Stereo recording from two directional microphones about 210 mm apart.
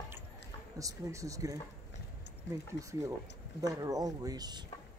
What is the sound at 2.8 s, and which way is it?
Speech, 55° left (ahead or behind).